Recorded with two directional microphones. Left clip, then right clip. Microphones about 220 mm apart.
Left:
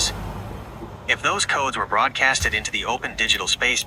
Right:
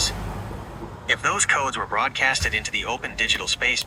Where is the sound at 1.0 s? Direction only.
15° left (ahead or behind).